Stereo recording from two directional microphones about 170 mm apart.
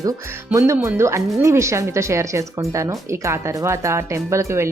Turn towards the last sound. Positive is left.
turn(degrees=-15)  # may be behind; listen again after turning